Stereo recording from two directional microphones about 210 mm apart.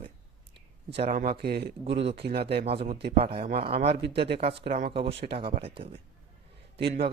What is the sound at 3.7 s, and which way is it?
Speech, 50° right (ahead or behind).